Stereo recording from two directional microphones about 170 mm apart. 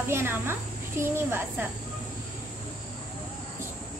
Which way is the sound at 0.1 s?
15° right (ahead or behind).